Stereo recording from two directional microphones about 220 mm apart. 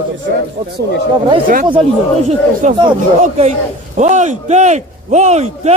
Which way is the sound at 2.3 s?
25° right (ahead or behind).